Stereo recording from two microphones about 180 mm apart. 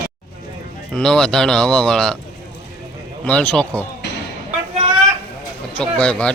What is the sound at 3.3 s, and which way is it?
Speech, 5° left (ahead or behind).